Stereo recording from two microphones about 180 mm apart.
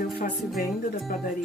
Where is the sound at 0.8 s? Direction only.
55° left (ahead or behind).